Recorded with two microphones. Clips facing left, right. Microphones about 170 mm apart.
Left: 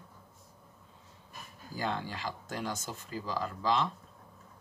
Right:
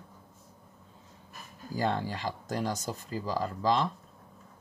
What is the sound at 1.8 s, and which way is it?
Speech, 40° right (ahead or behind).